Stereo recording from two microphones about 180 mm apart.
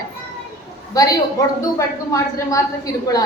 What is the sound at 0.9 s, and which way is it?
A woman's voice, 20° left (ahead or behind).